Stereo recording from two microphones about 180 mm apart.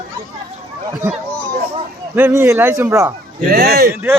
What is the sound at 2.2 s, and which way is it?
Speech, 10° right (ahead or behind).